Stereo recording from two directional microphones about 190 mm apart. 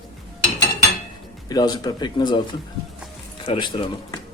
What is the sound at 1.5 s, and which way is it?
Speech, 20° left (ahead or behind).